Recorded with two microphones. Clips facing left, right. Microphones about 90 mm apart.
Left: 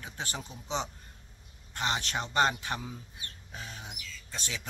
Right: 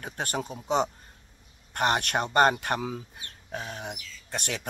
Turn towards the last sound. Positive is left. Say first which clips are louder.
# right 6 dB
turn(degrees=-60)  # may be behind; listen again after turning